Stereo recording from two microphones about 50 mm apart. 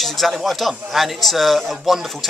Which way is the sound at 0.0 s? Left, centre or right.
Centre.